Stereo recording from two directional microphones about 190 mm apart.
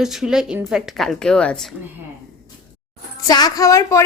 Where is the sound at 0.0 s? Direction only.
Centre (ahead or behind).